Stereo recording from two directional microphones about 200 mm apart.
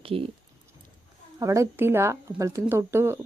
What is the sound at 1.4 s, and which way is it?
Speech, 15° right (ahead or behind).